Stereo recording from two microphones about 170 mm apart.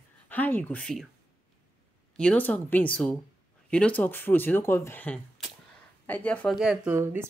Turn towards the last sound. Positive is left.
turn(degrees=-5)  # may be behind; listen again after turning